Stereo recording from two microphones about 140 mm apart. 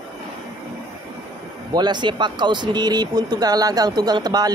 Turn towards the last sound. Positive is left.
turn(degrees=-30)  # may be behind; listen again after turning